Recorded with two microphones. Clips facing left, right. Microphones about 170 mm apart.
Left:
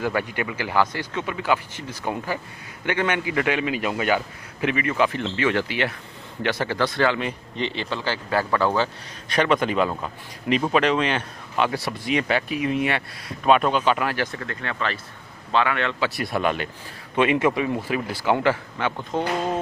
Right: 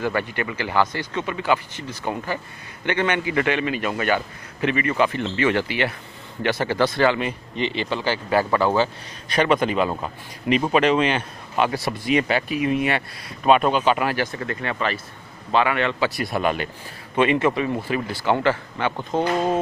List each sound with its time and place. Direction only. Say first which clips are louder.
0.0 s speech: right 1 dB; 10° left (ahead or behind)
9.8 s speech: right 2 dB; 15° right (ahead or behind); by 18.9 s 5° left (ahead or behind)
18.9 s speech: right 5 dB; 25° right (ahead or behind)